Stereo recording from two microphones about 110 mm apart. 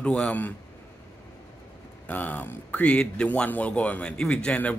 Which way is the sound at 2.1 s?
15° left (ahead or behind).